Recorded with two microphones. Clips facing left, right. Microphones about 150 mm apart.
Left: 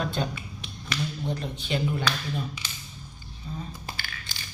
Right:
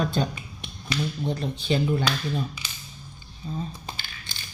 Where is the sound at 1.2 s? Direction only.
35° right (ahead or behind).